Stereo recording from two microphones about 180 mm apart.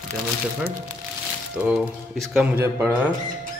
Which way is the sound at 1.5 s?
5° right (ahead or behind).